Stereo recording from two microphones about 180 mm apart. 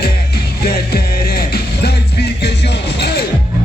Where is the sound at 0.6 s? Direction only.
55° left (ahead or behind).